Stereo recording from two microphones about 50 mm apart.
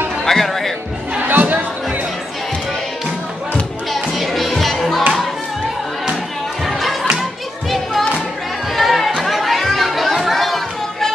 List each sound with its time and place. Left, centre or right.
0.2 s music: centre
1.2 s a sound: right
3.9 s music: centre
6.6 s music: centre
8.7 s chatter: centre